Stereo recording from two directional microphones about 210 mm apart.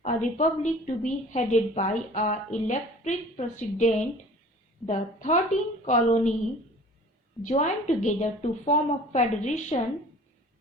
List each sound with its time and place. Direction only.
0.0 s a woman's voice: 35° left (ahead or behind)
7.4 s a woman's voice: 35° left (ahead or behind)